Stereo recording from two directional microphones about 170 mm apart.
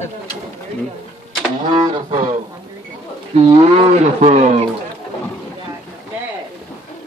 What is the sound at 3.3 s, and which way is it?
Speech, 35° right (ahead or behind).